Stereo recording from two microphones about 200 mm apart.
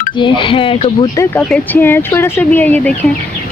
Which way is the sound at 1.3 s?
10° left (ahead or behind).